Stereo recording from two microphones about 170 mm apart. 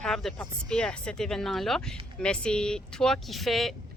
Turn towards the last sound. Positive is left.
turn(degrees=0)  # may be behind; listen again after turning